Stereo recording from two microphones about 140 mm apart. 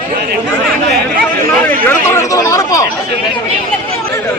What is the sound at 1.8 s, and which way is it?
Speech, 20° left (ahead or behind).